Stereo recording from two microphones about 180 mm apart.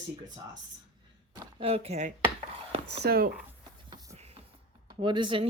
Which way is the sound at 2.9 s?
65° right (ahead or behind).